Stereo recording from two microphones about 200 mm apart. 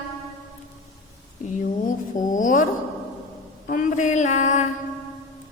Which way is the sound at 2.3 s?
40° left (ahead or behind).